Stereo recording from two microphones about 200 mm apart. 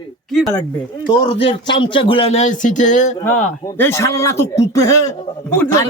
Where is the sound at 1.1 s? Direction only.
20° left (ahead or behind); by 3.1 s 35° left (ahead or behind).